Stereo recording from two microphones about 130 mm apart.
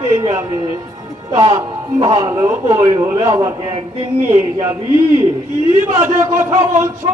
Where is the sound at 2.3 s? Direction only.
25° right (ahead or behind).